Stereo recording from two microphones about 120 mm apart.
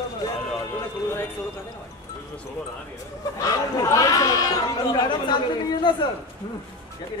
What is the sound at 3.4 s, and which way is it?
Speech, 30° left (ahead or behind).